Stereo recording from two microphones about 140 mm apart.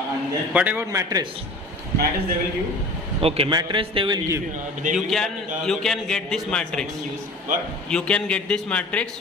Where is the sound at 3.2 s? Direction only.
45° right (ahead or behind).